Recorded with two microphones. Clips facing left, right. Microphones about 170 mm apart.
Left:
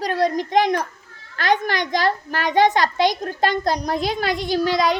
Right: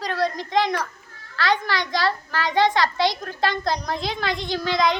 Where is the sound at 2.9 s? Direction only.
15° left (ahead or behind).